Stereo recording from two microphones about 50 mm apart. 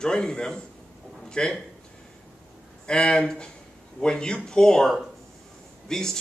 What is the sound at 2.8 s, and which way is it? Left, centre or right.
Speech, centre.